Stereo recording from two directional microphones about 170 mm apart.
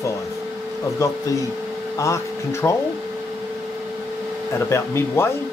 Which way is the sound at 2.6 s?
15° left (ahead or behind).